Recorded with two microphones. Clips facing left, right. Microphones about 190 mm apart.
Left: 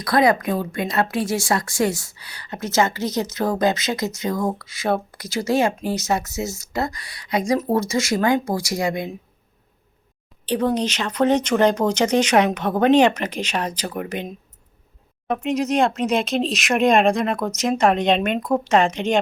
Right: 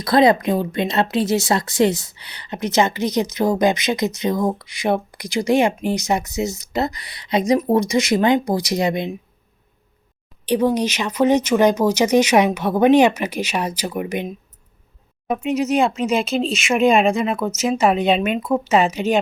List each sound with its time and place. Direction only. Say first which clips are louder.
0.0 s speech: right 3 dB; 25° right (ahead or behind)
10.4 s speech: right 3 dB; 10° right (ahead or behind)
15.4 s speech: right 1 dB; 5° right (ahead or behind)